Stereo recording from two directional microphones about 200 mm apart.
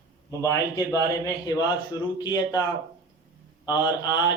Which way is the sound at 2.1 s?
20° left (ahead or behind).